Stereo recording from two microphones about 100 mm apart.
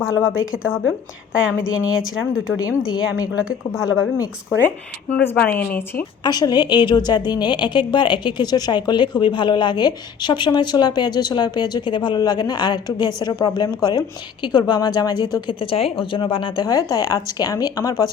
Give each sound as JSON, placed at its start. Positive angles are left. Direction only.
{"t": 0.0, "sound": "a woman's voice", "side_deg": -5}
{"t": 5.2, "sound": "speech", "side_deg": 20}
{"t": 6.2, "sound": "a woman's voice", "side_deg": 45}
{"t": 16.6, "sound": "speech", "side_deg": 35}